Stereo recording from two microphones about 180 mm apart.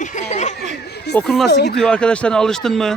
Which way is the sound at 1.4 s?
65° left (ahead or behind).